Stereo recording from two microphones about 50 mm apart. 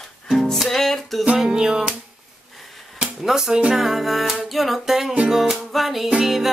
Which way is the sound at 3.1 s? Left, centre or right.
Centre.